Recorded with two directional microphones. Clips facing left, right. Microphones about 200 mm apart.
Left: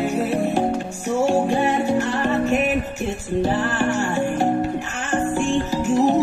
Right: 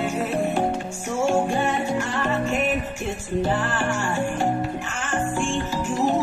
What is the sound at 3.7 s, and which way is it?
Music, 40° left (ahead or behind).